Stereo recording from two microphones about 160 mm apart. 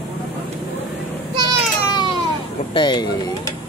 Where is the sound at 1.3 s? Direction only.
30° right (ahead or behind).